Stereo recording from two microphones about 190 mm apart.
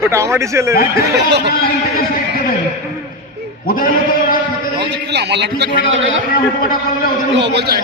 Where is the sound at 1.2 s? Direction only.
65° right (ahead or behind).